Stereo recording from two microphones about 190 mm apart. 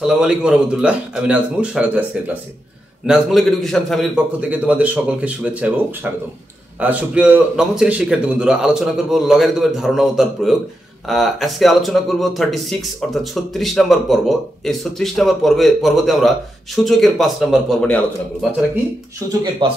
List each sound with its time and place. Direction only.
0.0 s speech: 5° right (ahead or behind)
3.1 s a man's voice: centre (ahead or behind)
6.8 s speech: 10° right (ahead or behind)
19.6 s speech: 25° right (ahead or behind)